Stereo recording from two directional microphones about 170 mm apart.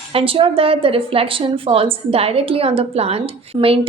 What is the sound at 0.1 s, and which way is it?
A woman's voice, 35° right (ahead or behind).